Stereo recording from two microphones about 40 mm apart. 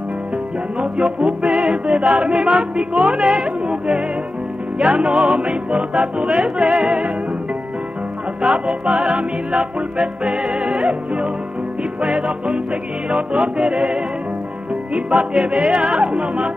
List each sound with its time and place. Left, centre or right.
0.7 s music: right
8.4 s music: right